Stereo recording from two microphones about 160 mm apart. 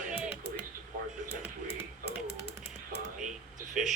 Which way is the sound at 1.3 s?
40° left (ahead or behind).